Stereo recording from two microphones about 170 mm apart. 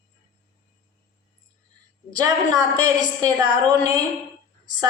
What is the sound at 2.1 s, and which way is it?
A woman's voice, 20° right (ahead or behind).